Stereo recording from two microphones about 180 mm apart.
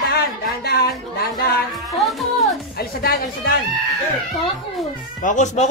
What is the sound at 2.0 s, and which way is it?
Music, centre (ahead or behind).